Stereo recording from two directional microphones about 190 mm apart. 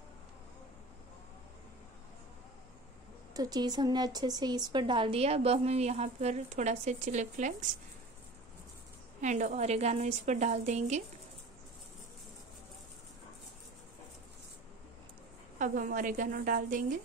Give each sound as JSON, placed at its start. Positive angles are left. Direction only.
{"t": 3.3, "sound": "a woman's voice", "side_deg": -20}
{"t": 9.2, "sound": "a woman's voice", "side_deg": -40}
{"t": 15.6, "sound": "a woman's voice", "side_deg": -45}